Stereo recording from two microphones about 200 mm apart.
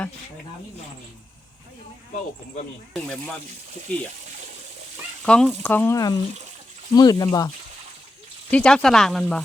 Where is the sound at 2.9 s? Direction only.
5° left (ahead or behind).